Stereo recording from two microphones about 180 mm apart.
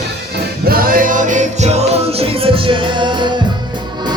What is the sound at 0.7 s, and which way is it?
Music, 55° right (ahead or behind).